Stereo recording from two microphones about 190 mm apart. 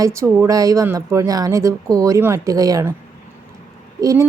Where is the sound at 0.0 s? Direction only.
15° right (ahead or behind).